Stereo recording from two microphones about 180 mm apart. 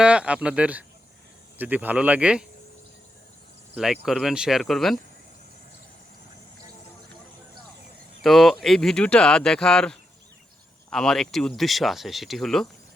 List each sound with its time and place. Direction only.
0.0 s speech: 5° right (ahead or behind)
4.0 s speech: centre (ahead or behind)
8.2 s speech: centre (ahead or behind)